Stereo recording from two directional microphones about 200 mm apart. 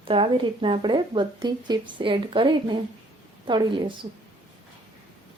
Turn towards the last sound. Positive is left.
turn(degrees=-25)  # may be behind; listen again after turning